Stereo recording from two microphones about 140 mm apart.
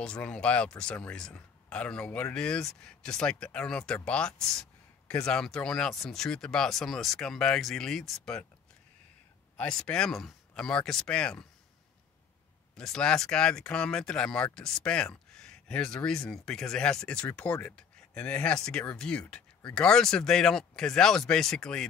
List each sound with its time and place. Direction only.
0.0 s speech: 5° left (ahead or behind)
9.6 s speech: 5° left (ahead or behind)
12.7 s speech: 5° left (ahead or behind)